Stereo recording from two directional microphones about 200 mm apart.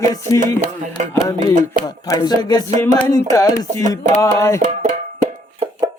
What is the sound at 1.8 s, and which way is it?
Music, 20° left (ahead or behind).